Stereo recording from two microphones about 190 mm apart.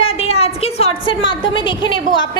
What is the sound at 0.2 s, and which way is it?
A woman's voice, 30° left (ahead or behind).